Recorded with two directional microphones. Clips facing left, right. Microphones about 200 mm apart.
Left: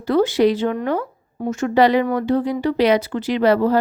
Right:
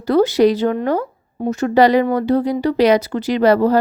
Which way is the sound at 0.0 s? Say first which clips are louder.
Right 3 dB; 40° right (ahead or behind).